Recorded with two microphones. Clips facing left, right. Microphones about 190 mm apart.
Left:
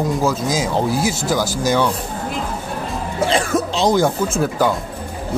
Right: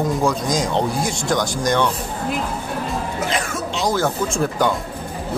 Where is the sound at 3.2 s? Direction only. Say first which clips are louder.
Left 11 dB; 30° left (ahead or behind).